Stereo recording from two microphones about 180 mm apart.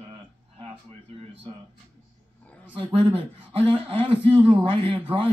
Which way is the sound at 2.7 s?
30° right (ahead or behind).